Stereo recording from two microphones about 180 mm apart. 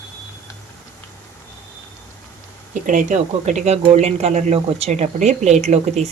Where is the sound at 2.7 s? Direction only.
45° right (ahead or behind).